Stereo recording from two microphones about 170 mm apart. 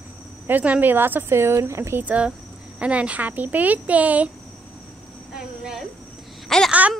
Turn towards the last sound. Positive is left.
turn(degrees=0)  # may be behind; listen again after turning